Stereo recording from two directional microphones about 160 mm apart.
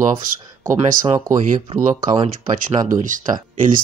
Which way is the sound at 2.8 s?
55° right (ahead or behind).